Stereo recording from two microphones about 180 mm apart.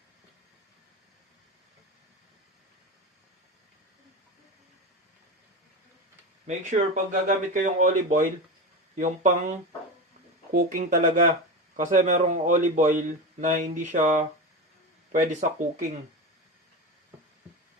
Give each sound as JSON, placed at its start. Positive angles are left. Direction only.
{"t": 6.5, "sound": "a man's voice", "side_deg": -45}